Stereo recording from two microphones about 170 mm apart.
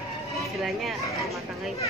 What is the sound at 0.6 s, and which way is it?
Speech, centre (ahead or behind).